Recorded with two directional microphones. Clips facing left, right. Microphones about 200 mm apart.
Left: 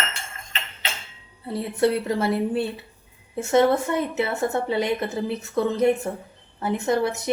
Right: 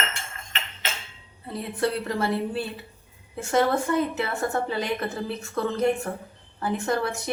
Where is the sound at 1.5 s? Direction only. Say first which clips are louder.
Left 5 dB; 25° left (ahead or behind).